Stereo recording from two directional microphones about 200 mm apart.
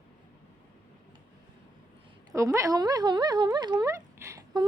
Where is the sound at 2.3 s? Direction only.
15° right (ahead or behind).